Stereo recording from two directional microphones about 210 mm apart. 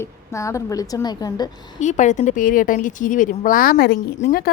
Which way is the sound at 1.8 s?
35° left (ahead or behind).